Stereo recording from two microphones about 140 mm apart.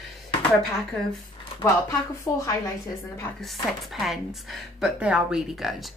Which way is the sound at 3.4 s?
Centre (ahead or behind).